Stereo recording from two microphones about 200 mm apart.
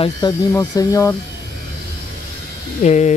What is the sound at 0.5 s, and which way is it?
Speech, 15° left (ahead or behind).